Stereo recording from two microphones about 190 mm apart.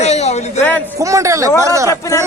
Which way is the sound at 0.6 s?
10° left (ahead or behind).